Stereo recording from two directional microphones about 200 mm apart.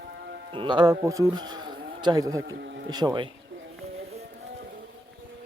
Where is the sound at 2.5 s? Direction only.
60° right (ahead or behind).